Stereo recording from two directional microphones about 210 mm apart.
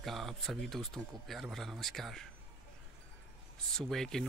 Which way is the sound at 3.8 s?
Centre (ahead or behind).